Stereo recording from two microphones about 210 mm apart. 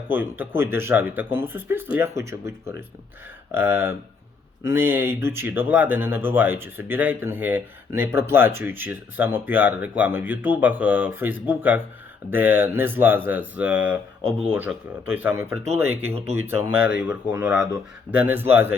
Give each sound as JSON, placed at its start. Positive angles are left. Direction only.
{"t": 0.1, "sound": "speech", "side_deg": -10}